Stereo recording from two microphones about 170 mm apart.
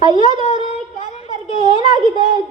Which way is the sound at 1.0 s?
35° left (ahead or behind).